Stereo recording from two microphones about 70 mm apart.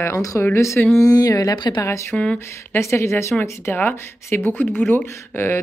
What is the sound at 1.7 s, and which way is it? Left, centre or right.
Speech, left.